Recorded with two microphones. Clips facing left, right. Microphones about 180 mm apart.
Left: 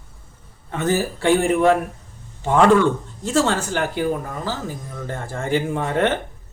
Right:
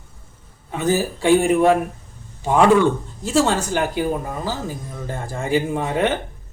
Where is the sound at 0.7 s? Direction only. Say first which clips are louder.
Right 1 dB; 15° right (ahead or behind).